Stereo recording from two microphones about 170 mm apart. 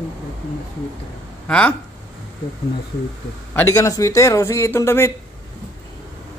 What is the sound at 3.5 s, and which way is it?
Speech, 20° left (ahead or behind).